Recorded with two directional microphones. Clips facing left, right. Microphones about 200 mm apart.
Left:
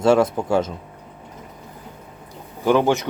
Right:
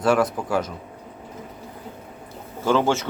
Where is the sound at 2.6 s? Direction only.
15° left (ahead or behind).